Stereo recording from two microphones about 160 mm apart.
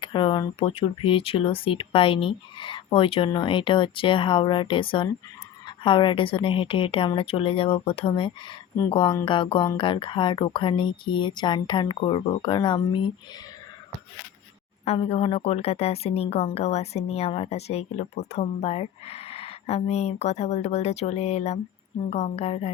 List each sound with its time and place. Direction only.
0.0 s speech: 30° left (ahead or behind)
14.8 s speech: 35° left (ahead or behind)